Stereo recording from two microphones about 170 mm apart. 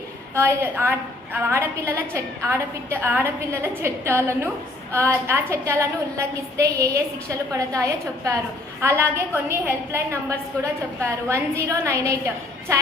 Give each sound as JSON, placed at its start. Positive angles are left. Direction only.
{"t": 0.3, "sound": "a woman's voice", "side_deg": -15}
{"t": 9.5, "sound": "a woman's voice", "side_deg": -15}